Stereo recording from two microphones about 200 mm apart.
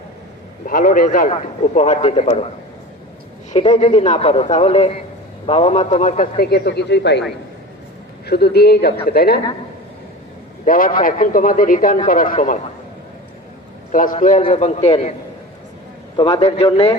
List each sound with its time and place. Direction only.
0.6 s a man's voice: 45° left (ahead or behind)
3.5 s a man's voice: 25° left (ahead or behind); by 7.3 s 60° left (ahead or behind)
8.3 s speech: 55° left (ahead or behind)
10.7 s speech: 45° left (ahead or behind)
13.9 s a man's voice: 40° left (ahead or behind)
16.1 s a man's voice: 25° left (ahead or behind)